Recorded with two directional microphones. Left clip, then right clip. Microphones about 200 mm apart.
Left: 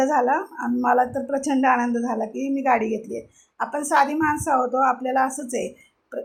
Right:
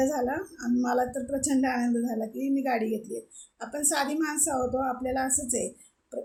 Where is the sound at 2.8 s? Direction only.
20° left (ahead or behind).